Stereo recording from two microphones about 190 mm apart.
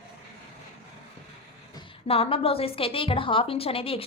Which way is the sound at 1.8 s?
30° left (ahead or behind).